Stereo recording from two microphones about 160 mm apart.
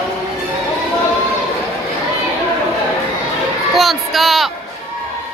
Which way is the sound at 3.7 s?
Centre (ahead or behind).